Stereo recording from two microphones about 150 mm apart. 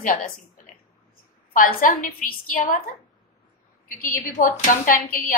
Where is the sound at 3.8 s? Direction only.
65° left (ahead or behind).